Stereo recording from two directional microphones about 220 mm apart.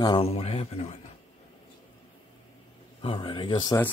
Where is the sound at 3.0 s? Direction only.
25° left (ahead or behind).